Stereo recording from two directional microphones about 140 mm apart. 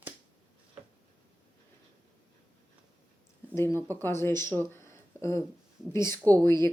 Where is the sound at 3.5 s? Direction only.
20° left (ahead or behind).